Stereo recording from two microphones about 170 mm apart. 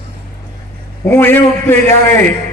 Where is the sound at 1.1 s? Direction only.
10° left (ahead or behind).